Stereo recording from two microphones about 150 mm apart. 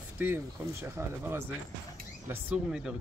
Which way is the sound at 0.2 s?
15° right (ahead or behind).